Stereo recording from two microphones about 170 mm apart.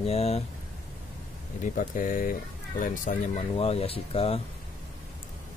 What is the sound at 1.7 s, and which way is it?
Speech, 50° left (ahead or behind).